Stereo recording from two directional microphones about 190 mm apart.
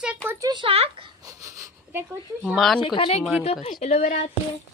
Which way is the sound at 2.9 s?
30° left (ahead or behind).